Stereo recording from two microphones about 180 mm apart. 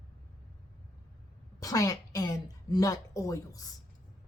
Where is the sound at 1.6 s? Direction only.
20° left (ahead or behind).